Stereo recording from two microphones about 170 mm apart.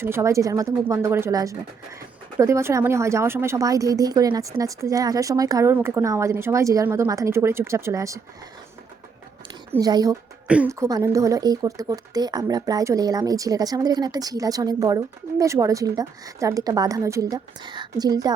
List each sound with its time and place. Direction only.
0.0 s speech: 15° right (ahead or behind)
9.8 s speech: 20° right (ahead or behind)
10.4 s a woman's voice: 5° right (ahead or behind)
10.7 s speech: 20° right (ahead or behind)